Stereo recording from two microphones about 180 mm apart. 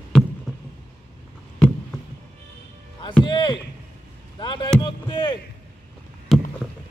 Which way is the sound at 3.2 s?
25° left (ahead or behind).